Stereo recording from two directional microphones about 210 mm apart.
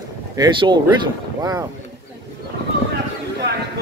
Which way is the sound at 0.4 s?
20° right (ahead or behind).